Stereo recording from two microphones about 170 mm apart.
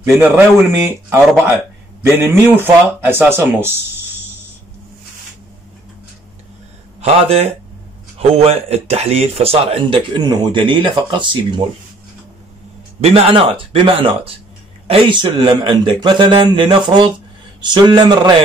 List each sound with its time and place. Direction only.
0.1 s speech: 15° right (ahead or behind)
7.0 s speech: 35° right (ahead or behind)
13.0 s a man's voice: 35° right (ahead or behind)